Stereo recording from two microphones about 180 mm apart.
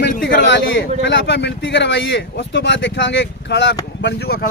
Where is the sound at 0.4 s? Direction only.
80° left.